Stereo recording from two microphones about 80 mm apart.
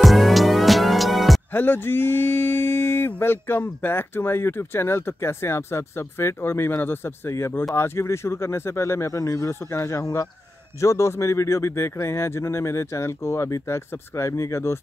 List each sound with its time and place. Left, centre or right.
0.0 s music: centre
1.5 s speech: left